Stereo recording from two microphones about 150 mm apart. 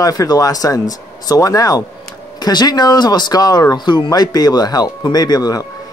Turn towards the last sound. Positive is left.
turn(degrees=25)  # may be behind; listen again after turning